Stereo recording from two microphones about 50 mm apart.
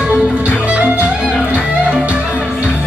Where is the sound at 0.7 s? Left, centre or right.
Right.